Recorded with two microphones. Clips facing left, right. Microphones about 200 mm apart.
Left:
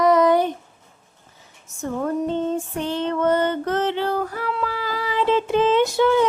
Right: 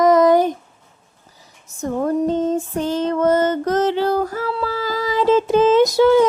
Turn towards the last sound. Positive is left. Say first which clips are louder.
# right 5 dB
turn(degrees=-40)  # may be behind; listen again after turning